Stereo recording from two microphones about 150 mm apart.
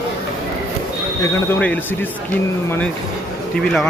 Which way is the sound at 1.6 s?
10° left (ahead or behind).